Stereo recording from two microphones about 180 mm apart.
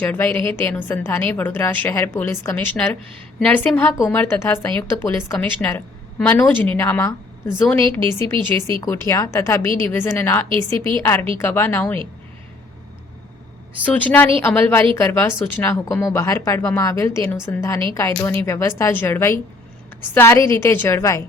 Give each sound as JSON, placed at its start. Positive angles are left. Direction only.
{"t": 0.0, "sound": "a woman's voice", "side_deg": 10}
{"t": 13.8, "sound": "a woman's voice", "side_deg": 10}